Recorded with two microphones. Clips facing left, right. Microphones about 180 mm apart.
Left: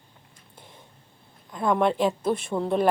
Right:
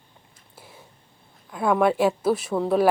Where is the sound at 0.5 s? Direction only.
5° right (ahead or behind).